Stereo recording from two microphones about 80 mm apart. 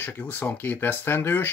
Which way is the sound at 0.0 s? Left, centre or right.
Left.